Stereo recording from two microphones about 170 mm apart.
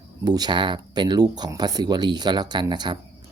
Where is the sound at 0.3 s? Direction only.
25° right (ahead or behind).